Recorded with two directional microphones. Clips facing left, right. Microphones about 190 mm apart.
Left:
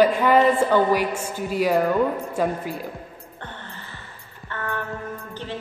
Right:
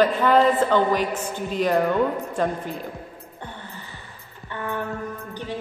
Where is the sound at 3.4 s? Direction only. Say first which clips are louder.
Right 1 dB; 10° right (ahead or behind).